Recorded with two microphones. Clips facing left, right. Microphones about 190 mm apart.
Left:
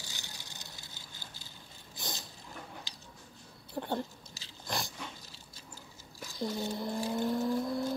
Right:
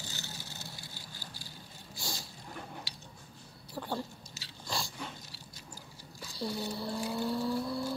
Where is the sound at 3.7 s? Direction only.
20° left (ahead or behind).